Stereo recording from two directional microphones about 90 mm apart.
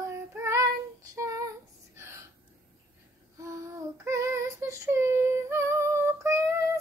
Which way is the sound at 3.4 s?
35° right (ahead or behind).